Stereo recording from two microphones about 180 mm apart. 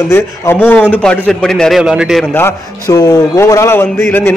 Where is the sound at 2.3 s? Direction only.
15° left (ahead or behind).